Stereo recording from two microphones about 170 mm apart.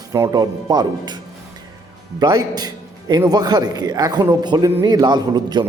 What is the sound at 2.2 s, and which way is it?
A man's voice, 25° right (ahead or behind).